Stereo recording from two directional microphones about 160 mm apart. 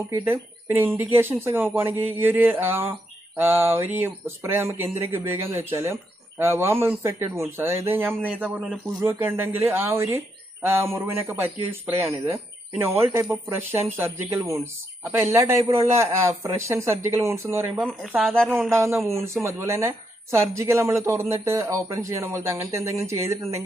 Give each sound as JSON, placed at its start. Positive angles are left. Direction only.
{"t": 0.1, "sound": "speech", "side_deg": -15}
{"t": 17.7, "sound": "speech", "side_deg": 5}
{"t": 18.7, "sound": "speech", "side_deg": -15}